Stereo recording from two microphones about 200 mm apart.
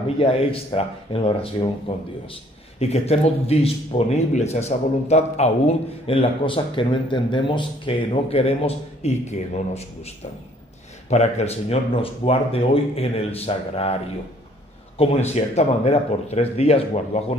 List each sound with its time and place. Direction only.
0.2 s a man's voice: 30° left (ahead or behind)
11.1 s speech: 35° left (ahead or behind)